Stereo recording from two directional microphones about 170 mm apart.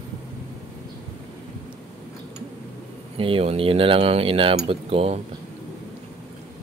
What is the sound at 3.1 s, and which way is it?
Speech, 30° right (ahead or behind).